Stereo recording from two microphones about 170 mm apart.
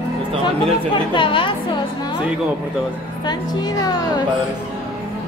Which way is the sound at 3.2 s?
25° left (ahead or behind).